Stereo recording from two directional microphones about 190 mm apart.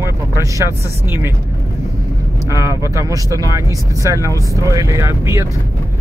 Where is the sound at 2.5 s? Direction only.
15° right (ahead or behind).